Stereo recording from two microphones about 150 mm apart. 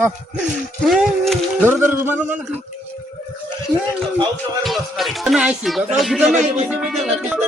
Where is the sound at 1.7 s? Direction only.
15° right (ahead or behind).